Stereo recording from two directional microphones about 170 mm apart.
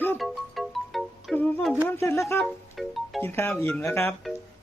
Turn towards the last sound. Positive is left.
turn(degrees=15)  # may be behind; listen again after turning